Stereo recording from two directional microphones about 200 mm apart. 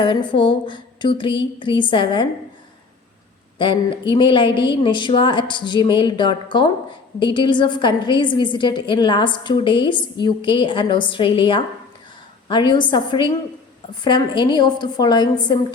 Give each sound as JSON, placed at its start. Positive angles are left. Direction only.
{"t": 0.0, "sound": "a woman's voice", "side_deg": 25}
{"t": 4.1, "sound": "a woman's voice", "side_deg": 25}